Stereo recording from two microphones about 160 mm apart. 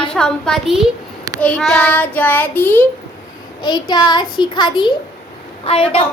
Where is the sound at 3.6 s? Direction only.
25° left (ahead or behind).